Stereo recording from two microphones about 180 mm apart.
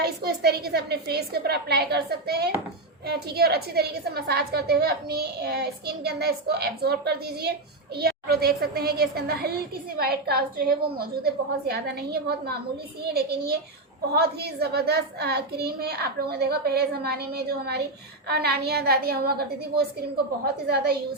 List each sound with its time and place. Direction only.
0.0 s a woman's voice: 60° right (ahead or behind)